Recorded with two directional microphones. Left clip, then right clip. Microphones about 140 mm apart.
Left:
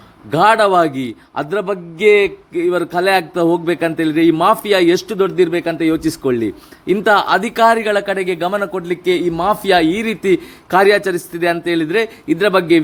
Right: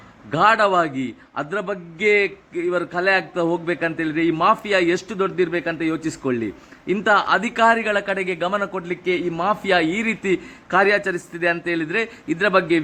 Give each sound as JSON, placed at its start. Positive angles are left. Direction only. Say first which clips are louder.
{"t": 0.3, "sound": "a man's voice", "louder": "left 5 dB", "side_deg": 20}